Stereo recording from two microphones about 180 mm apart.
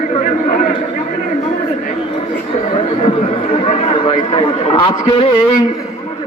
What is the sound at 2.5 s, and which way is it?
Chatter, 30° left (ahead or behind).